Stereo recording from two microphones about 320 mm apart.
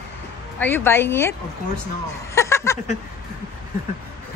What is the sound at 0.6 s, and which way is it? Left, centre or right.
Speech, centre.